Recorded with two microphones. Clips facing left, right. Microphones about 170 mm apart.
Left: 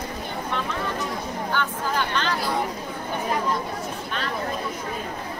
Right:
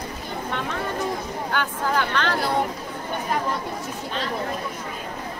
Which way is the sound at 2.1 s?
65° right (ahead or behind).